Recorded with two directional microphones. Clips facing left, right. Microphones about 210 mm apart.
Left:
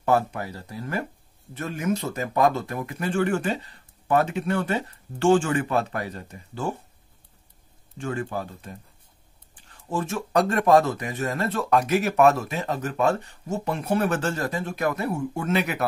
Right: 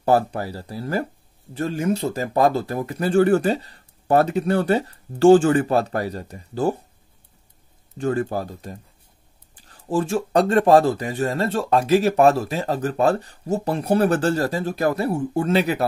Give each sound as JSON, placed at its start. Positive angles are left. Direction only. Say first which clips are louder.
{"t": 0.0, "sound": "speech", "louder": "right 4 dB", "side_deg": -35}
{"t": 8.0, "sound": "speech", "louder": "right 6 dB", "side_deg": -35}